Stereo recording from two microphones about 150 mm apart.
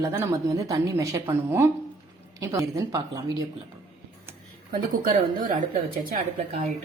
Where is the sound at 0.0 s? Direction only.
20° right (ahead or behind).